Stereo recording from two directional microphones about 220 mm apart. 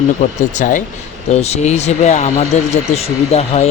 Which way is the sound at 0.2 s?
35° left (ahead or behind).